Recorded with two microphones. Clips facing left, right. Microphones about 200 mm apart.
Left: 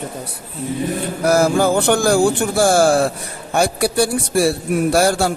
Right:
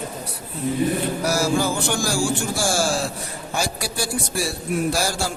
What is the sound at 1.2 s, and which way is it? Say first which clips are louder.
A man's voice: left 10 dB; 55° left (ahead or behind).